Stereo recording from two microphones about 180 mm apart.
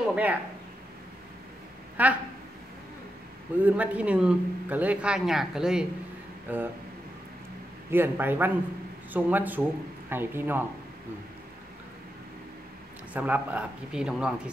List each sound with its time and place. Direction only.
0.1 s speech: 10° right (ahead or behind)
2.0 s speech: 10° right (ahead or behind)
3.5 s speech: 10° right (ahead or behind)
7.9 s speech: 10° right (ahead or behind)
13.1 s speech: 10° right (ahead or behind)